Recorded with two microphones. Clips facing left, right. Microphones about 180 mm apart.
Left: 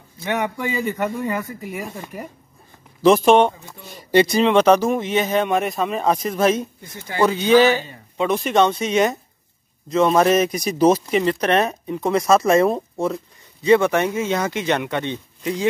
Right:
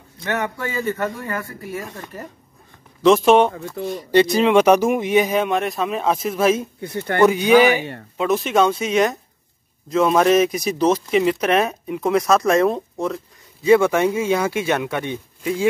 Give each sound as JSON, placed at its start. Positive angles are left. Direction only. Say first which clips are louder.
{"t": 0.2, "sound": "a man's voice", "louder": "left 1 dB", "side_deg": 15}
{"t": 3.5, "sound": "speech", "louder": "right 14 dB", "side_deg": -60}
{"t": 3.9, "sound": "speech", "louder": "even", "side_deg": 0}
{"t": 6.8, "sound": "speech", "louder": "right 10 dB", "side_deg": -65}
{"t": 7.2, "sound": "speech", "louder": "even", "side_deg": -15}
{"t": 8.2, "sound": "speech", "louder": "even", "side_deg": 0}